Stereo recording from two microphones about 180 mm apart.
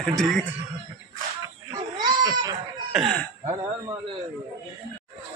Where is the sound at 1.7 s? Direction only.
20° right (ahead or behind).